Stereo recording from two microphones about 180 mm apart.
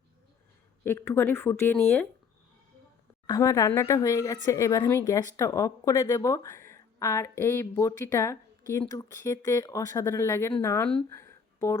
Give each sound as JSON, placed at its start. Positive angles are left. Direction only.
{"t": 0.9, "sound": "speech", "side_deg": 15}
{"t": 3.2, "sound": "speech", "side_deg": 20}
{"t": 10.8, "sound": "speech", "side_deg": 5}
{"t": 11.2, "sound": "a sound", "side_deg": 15}